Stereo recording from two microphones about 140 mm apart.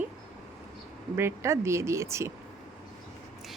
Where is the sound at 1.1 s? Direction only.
20° right (ahead or behind).